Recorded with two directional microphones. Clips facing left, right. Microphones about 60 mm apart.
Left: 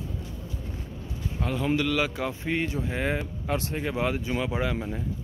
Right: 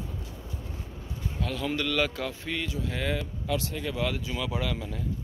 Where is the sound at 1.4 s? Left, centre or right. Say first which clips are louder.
Left 4 dB; left.